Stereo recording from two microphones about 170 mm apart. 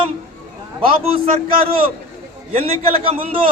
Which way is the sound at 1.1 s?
35° right (ahead or behind).